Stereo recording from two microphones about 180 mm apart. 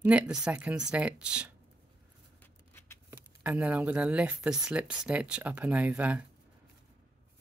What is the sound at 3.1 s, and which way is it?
Speech, 10° right (ahead or behind).